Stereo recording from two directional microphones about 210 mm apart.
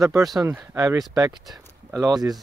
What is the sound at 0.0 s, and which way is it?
Speech, 15° right (ahead or behind).